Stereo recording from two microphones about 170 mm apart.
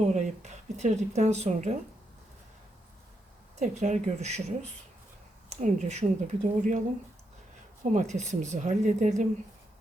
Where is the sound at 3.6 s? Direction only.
45° right (ahead or behind).